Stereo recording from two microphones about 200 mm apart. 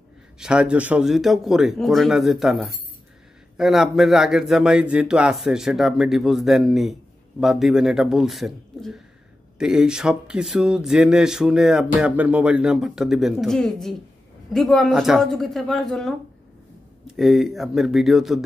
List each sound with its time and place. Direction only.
0.4 s speech: 5° right (ahead or behind)